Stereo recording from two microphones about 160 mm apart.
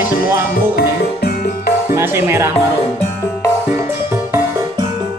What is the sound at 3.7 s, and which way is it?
Music, 15° right (ahead or behind).